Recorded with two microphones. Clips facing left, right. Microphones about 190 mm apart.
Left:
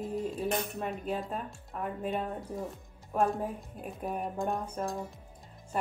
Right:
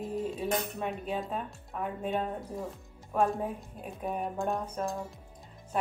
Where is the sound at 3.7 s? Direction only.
Centre (ahead or behind).